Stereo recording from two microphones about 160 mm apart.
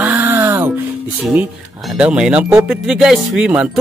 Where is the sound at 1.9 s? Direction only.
5° right (ahead or behind).